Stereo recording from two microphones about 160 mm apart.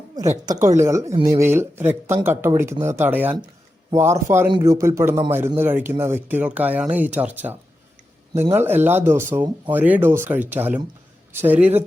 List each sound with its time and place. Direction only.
0.4 s a man's voice: 25° right (ahead or behind)